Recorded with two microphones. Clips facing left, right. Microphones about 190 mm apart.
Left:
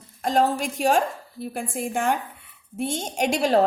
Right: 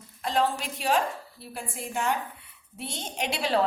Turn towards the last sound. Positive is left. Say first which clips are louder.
# left 6 dB
turn(degrees=45)  # may be behind; listen again after turning